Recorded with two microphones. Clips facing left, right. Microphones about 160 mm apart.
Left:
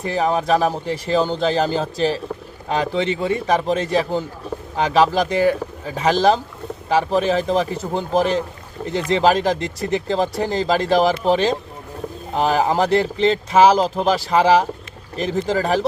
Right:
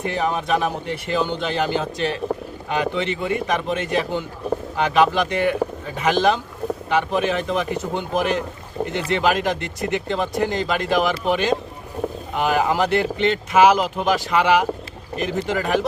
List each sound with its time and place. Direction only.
0.0 s speech: 35° left (ahead or behind)